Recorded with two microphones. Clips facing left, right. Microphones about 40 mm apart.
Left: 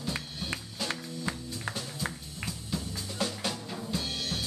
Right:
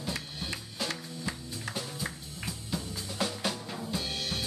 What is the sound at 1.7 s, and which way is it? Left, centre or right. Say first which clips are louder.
Music: left 1 dB; centre.